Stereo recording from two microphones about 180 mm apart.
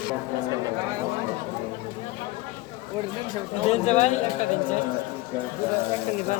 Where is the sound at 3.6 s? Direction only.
40° left (ahead or behind).